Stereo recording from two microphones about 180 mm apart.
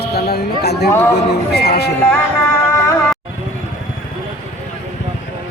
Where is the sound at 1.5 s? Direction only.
65° left (ahead or behind).